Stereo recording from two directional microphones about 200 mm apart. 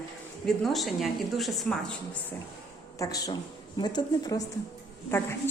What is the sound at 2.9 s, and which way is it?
A woman's voice, 15° left (ahead or behind).